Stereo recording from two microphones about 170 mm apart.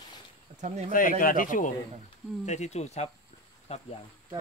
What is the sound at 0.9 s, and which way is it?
Speech, 55° left (ahead or behind).